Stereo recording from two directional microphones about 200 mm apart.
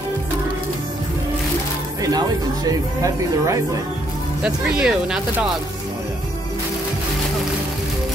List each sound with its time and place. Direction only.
2.0 s speech: 20° right (ahead or behind)
4.4 s speech: 5° right (ahead or behind)